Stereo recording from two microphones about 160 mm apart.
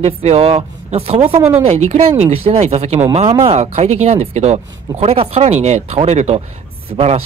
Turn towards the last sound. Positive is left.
turn(degrees=-40)  # may be behind; listen again after turning